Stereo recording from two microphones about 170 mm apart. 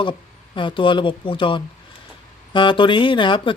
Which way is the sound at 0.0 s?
30° left (ahead or behind).